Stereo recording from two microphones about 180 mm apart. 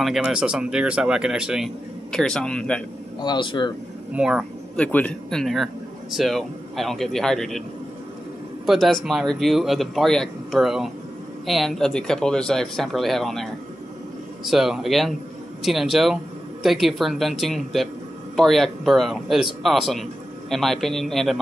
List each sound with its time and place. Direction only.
0.0 s speech: 5° right (ahead or behind)
3.2 s speech: 25° left (ahead or behind)
4.1 s speech: 5° right (ahead or behind)
4.7 s speech: 10° left (ahead or behind)
8.6 s speech: centre (ahead or behind)